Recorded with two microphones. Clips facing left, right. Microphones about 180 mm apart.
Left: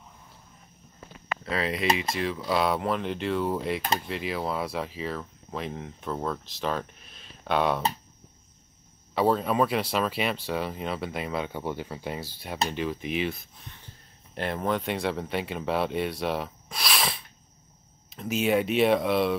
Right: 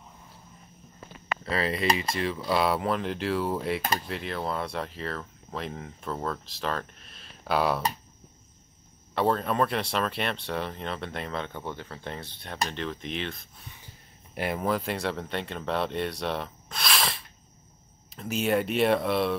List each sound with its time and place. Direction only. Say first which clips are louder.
1.4 s speech: even; centre (ahead or behind)
9.1 s speech: left 2 dB; centre (ahead or behind)
14.3 s speech: even; 10° right (ahead or behind)